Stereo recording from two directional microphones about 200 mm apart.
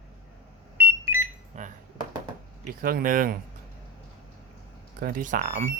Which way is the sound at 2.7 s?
45° right (ahead or behind).